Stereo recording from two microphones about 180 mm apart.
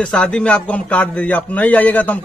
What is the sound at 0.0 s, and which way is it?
A man's voice, 5° left (ahead or behind).